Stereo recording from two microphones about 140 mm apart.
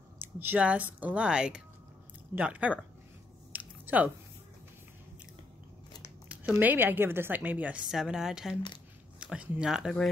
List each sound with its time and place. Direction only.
0.2 s a woman's voice: 15° right (ahead or behind)
3.5 s a sound: 10° right (ahead or behind)
6.5 s a woman's voice: 15° right (ahead or behind)